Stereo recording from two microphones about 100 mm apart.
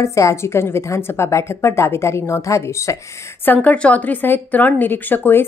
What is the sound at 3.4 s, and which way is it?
Speech, 15° left (ahead or behind).